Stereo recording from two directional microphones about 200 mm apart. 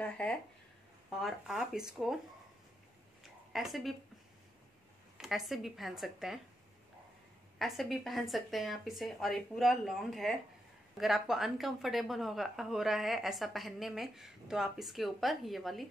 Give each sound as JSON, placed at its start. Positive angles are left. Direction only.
{"t": 0.0, "sound": "a woman's voice", "side_deg": 5}
{"t": 3.5, "sound": "a woman's voice", "side_deg": 0}
{"t": 5.1, "sound": "a woman's voice", "side_deg": 0}
{"t": 7.5, "sound": "a woman's voice", "side_deg": 0}